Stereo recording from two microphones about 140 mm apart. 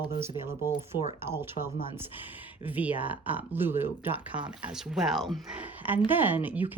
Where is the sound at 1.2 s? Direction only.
15° right (ahead or behind).